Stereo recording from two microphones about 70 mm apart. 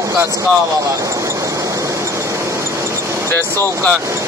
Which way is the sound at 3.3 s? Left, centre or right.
Left.